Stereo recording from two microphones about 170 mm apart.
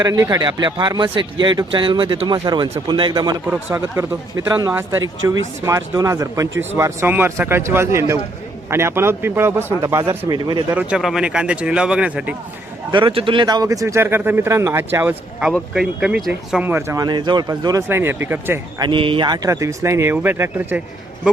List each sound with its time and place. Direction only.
0.0 s speech: 20° right (ahead or behind)
3.4 s speech: 10° right (ahead or behind)
10.8 s speech: 5° right (ahead or behind)
12.9 s speech: 30° right (ahead or behind); by 18.6 s 10° right (ahead or behind)
18.8 s speech: 30° right (ahead or behind); by 20.8 s 10° right (ahead or behind)